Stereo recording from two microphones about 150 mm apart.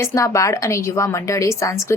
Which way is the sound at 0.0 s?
20° left (ahead or behind).